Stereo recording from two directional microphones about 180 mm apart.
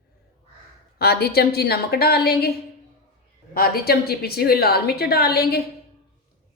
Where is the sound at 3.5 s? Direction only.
55° left (ahead or behind).